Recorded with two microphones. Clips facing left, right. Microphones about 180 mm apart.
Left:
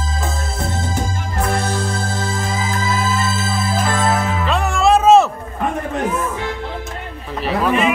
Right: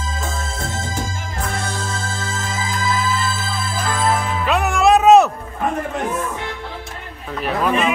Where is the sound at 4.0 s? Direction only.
Centre (ahead or behind).